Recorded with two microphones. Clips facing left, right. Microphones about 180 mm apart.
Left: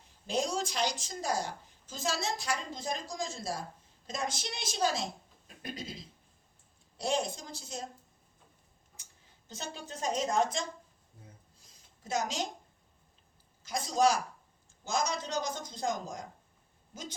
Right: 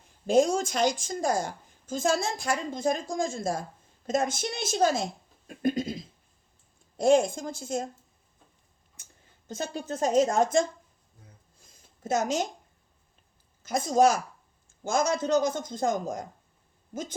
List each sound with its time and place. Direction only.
0.3 s a woman's voice: 50° right (ahead or behind)
6.9 s a woman's voice: 50° right (ahead or behind)
9.0 s a sound: 55° right (ahead or behind)
9.5 s a woman's voice: 50° right (ahead or behind)
11.6 s a sound: 50° right (ahead or behind)
13.6 s a woman's voice: 50° right (ahead or behind)